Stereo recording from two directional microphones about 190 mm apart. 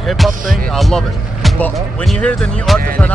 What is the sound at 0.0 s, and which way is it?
Speech, centre (ahead or behind).